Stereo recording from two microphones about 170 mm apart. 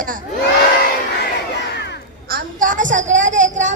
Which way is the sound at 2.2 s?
55° right (ahead or behind).